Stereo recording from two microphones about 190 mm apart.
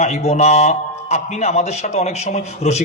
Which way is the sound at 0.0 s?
35° left (ahead or behind).